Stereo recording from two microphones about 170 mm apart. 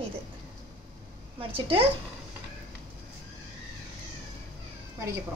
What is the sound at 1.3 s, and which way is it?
Speech, 30° right (ahead or behind).